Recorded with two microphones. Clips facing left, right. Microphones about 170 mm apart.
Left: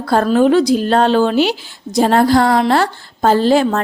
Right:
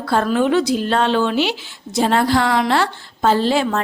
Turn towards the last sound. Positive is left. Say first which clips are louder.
# left 5 dB
turn(degrees=40)  # may be behind; listen again after turning